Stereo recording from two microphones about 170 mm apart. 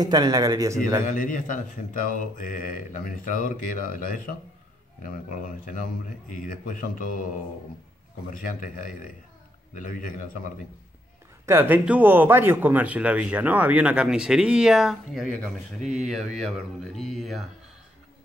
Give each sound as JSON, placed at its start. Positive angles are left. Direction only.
{"t": 0.0, "sound": "speech", "side_deg": -20}
{"t": 1.0, "sound": "speech", "side_deg": 55}
{"t": 8.3, "sound": "speech", "side_deg": 55}
{"t": 11.4, "sound": "speech", "side_deg": -15}
{"t": 15.8, "sound": "speech", "side_deg": -45}
{"t": 16.8, "sound": "speech", "side_deg": 0}